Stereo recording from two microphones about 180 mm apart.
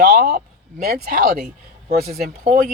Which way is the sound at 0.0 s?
45° right (ahead or behind).